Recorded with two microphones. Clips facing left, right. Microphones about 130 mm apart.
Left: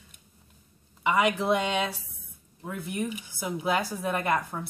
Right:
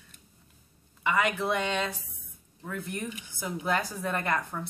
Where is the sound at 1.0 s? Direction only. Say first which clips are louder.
Left 3 dB; 15° left (ahead or behind).